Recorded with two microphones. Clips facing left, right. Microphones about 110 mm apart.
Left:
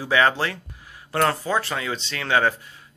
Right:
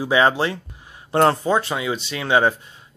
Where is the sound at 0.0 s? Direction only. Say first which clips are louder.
Right 3 dB; 20° right (ahead or behind).